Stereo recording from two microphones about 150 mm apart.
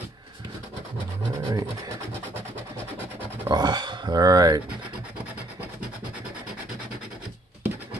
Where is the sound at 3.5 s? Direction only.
30° right (ahead or behind).